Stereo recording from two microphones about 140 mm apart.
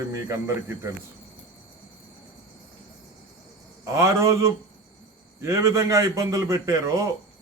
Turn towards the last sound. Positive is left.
turn(degrees=-25)  # may be behind; listen again after turning